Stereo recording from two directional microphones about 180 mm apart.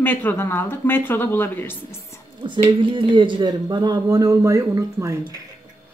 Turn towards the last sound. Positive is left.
turn(degrees=-15)  # may be behind; listen again after turning